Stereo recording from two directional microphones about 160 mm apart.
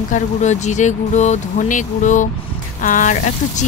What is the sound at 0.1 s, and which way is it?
Speech, 45° left (ahead or behind).